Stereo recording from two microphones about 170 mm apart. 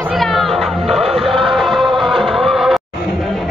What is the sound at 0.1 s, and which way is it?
Music, centre (ahead or behind).